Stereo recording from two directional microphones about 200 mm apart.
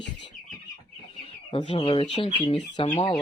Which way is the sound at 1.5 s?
25° left (ahead or behind).